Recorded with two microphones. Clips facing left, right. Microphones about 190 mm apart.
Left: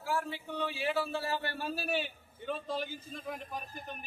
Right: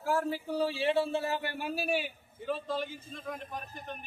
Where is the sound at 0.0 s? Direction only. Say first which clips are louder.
Right 5 dB; 45° right (ahead or behind).